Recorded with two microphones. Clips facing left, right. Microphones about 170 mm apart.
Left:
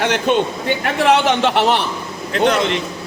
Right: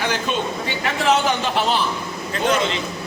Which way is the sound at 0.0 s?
65° left (ahead or behind).